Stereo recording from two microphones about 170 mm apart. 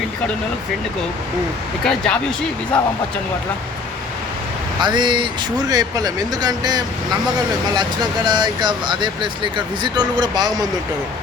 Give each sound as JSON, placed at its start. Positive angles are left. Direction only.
{"t": 1.8, "sound": "speech", "side_deg": 0}
{"t": 4.8, "sound": "speech", "side_deg": -25}